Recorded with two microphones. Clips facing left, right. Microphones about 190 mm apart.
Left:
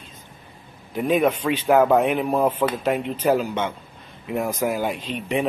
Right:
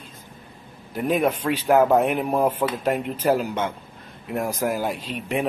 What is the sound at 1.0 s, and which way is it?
A man's voice, 5° right (ahead or behind).